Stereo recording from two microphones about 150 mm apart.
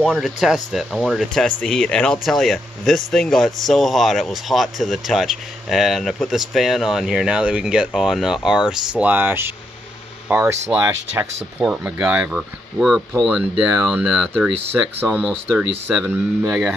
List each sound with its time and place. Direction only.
0.0 s speech: centre (ahead or behind)